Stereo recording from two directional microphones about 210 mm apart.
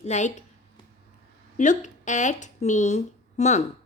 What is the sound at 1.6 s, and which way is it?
A woman's voice, 35° left (ahead or behind).